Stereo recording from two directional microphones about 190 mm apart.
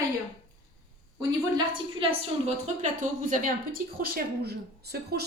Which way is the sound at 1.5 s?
30° right (ahead or behind).